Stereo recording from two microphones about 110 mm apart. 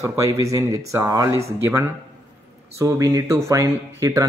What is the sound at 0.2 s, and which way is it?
A man's voice, 30° right (ahead or behind).